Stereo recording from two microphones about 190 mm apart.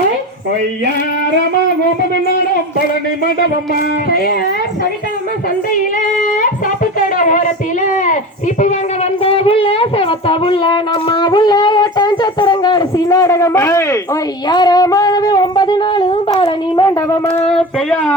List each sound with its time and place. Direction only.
4.1 s speech: 50° left (ahead or behind)
7.2 s speech: 40° left (ahead or behind); by 17.3 s 20° left (ahead or behind)
17.5 s child singing: 5° left (ahead or behind)